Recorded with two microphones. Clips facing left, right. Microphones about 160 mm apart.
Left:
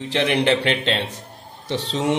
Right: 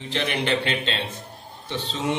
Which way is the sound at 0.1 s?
75° left (ahead or behind).